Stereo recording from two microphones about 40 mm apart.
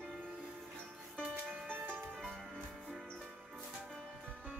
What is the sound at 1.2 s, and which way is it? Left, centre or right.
Music, centre.